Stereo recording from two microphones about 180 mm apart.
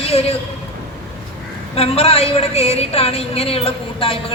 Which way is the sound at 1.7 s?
35° left (ahead or behind).